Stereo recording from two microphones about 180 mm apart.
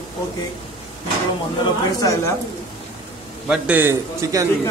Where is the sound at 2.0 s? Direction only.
15° left (ahead or behind).